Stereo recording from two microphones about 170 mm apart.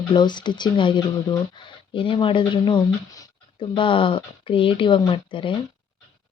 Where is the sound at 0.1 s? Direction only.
25° left (ahead or behind).